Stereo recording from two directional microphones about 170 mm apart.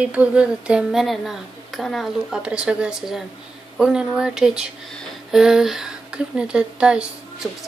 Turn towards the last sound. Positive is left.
turn(degrees=0)  # may be behind; listen again after turning